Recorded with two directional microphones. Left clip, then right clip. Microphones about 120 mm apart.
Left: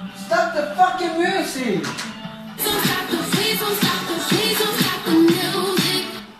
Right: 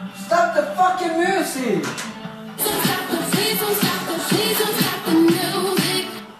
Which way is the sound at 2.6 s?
15° right (ahead or behind).